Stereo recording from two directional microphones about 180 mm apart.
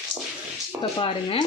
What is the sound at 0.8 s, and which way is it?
Speech, 30° left (ahead or behind).